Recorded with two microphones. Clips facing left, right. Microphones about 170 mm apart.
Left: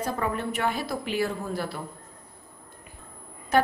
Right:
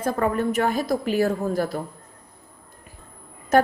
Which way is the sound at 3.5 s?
45° right (ahead or behind).